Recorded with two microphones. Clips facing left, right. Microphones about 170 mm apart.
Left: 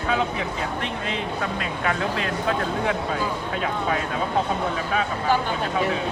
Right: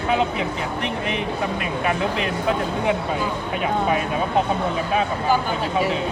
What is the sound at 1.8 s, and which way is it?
A man's voice, 15° right (ahead or behind).